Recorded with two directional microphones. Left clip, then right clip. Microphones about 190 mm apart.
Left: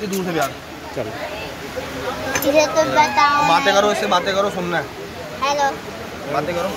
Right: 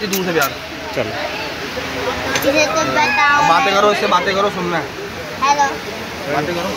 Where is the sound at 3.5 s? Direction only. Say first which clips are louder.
Right 2 dB; 50° left (ahead or behind).